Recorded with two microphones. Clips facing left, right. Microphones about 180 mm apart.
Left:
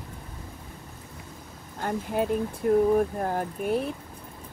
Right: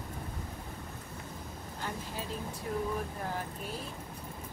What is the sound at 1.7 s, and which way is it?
Speech, 55° left (ahead or behind).